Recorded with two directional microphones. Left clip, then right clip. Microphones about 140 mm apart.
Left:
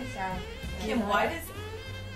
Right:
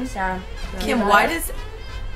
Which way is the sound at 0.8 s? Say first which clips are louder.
Right 12 dB; 35° right (ahead or behind).